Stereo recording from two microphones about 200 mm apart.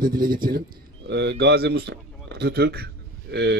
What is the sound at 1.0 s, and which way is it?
Speech, 60° right (ahead or behind).